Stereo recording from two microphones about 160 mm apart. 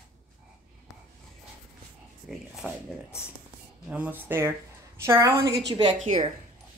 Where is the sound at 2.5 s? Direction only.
5° right (ahead or behind); by 5.9 s 25° right (ahead or behind).